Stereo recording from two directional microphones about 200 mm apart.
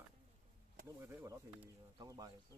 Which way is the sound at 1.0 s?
10° right (ahead or behind).